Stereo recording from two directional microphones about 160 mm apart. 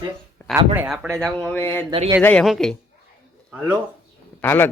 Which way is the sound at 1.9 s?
30° right (ahead or behind).